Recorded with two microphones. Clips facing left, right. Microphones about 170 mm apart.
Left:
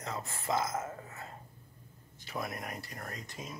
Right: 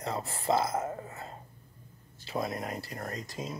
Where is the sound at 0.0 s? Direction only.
30° right (ahead or behind).